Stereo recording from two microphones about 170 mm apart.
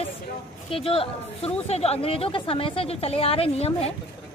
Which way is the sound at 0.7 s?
35° left (ahead or behind).